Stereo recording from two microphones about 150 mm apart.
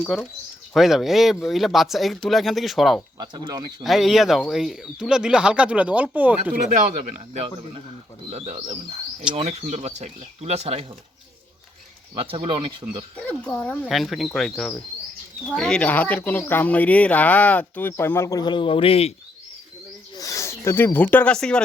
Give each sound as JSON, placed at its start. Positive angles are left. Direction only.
{"t": 0.0, "sound": "speech", "side_deg": 5}
{"t": 3.2, "sound": "speech", "side_deg": -30}
{"t": 3.8, "sound": "speech", "side_deg": 0}
{"t": 7.0, "sound": "speech", "side_deg": -50}
{"t": 12.3, "sound": "speech", "side_deg": -35}
{"t": 13.1, "sound": "speech", "side_deg": 10}
{"t": 20.1, "sound": "speech", "side_deg": 20}